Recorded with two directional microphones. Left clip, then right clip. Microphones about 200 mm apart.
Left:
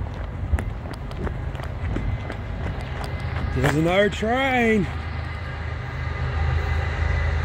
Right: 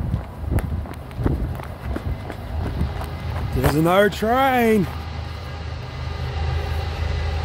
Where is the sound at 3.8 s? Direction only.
30° right (ahead or behind).